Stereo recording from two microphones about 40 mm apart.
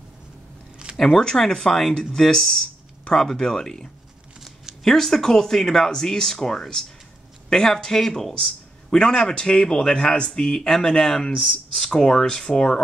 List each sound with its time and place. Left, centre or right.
0.9 s speech: centre